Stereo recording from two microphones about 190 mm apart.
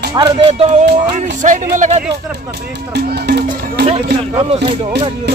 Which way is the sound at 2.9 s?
60° right (ahead or behind).